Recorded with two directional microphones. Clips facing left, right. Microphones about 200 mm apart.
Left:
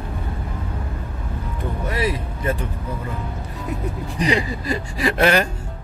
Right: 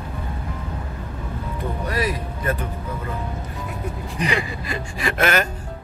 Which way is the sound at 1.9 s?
25° left (ahead or behind).